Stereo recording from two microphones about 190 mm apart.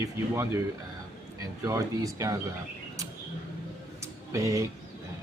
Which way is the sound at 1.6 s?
15° right (ahead or behind).